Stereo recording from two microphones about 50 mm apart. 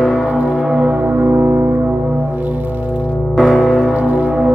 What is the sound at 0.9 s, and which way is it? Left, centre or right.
Music, right.